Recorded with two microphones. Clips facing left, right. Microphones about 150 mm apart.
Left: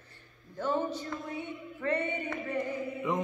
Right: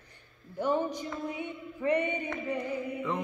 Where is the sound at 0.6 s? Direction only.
15° right (ahead or behind).